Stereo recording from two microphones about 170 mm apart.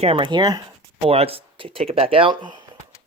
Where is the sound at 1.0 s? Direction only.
35° right (ahead or behind).